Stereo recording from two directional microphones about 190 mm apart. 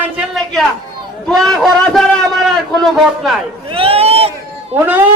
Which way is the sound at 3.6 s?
30° right (ahead or behind).